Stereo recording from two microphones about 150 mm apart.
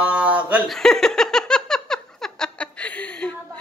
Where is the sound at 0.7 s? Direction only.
5° left (ahead or behind).